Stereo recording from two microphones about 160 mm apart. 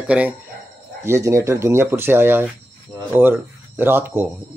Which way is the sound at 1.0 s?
15° right (ahead or behind).